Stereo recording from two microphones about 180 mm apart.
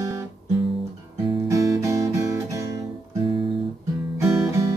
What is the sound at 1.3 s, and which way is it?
Guitar, 20° right (ahead or behind).